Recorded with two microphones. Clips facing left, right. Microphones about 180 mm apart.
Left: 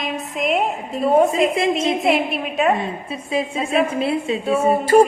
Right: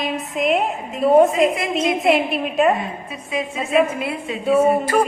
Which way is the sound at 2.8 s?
30° left (ahead or behind).